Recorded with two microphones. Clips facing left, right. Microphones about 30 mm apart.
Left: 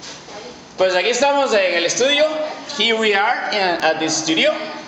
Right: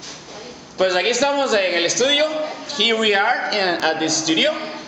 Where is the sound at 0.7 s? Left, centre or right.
Centre.